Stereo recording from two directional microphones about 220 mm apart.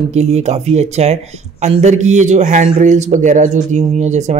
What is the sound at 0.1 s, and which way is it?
A man's voice, 30° right (ahead or behind).